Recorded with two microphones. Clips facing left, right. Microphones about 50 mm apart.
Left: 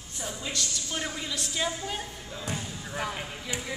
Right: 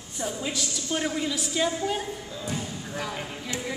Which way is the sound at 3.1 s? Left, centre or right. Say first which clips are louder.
Right 2 dB; centre.